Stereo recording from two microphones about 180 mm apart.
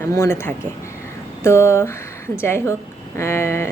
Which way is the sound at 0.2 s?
15° left (ahead or behind).